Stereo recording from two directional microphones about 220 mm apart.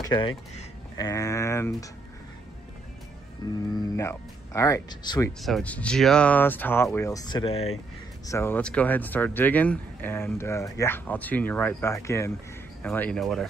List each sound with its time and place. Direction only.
0.0 s speech: 20° left (ahead or behind)
3.4 s speech: 15° left (ahead or behind)
5.4 s speech: 5° left (ahead or behind); by 7.7 s 25° left (ahead or behind)
8.3 s speech: 10° left (ahead or behind)